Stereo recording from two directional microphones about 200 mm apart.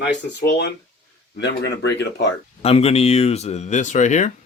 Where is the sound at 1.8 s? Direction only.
55° left (ahead or behind).